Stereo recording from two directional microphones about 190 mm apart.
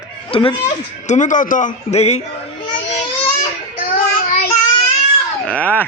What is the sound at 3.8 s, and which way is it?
Child singing, 50° left (ahead or behind).